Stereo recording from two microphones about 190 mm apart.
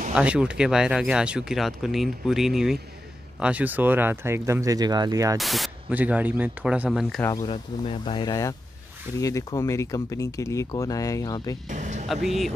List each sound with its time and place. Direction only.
0.1 s speech: 5° right (ahead or behind)
5.4 s speech: centre (ahead or behind)
7.4 s speech: 25° left (ahead or behind)
11.7 s speech: 40° right (ahead or behind)